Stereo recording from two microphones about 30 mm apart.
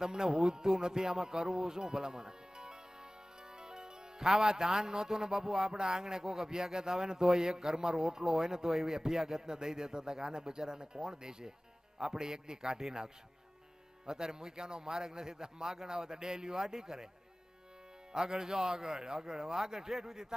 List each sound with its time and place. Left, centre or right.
0.0 s music: right
4.3 s speech: centre
18.1 s speech: right